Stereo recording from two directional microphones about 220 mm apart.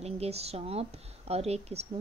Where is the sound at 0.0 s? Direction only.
30° right (ahead or behind).